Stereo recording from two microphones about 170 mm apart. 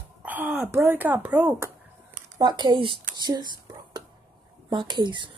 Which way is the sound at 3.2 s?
25° right (ahead or behind).